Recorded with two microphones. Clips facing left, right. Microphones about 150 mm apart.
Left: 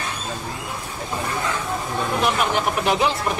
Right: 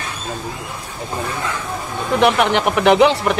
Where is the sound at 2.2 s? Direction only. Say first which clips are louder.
Right 8 dB; 70° right (ahead or behind).